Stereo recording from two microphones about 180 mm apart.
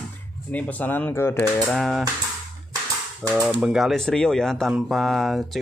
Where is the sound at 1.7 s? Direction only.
Centre (ahead or behind).